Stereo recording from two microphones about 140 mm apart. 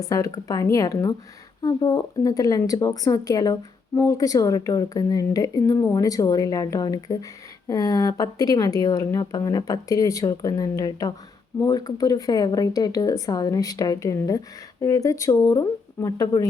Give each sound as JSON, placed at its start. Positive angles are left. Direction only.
{"t": 0.0, "sound": "a woman's voice", "side_deg": 25}